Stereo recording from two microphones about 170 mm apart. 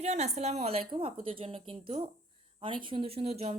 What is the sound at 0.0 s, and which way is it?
A woman's voice, 40° right (ahead or behind).